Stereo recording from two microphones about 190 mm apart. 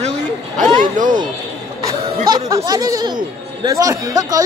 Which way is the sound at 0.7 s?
40° right (ahead or behind).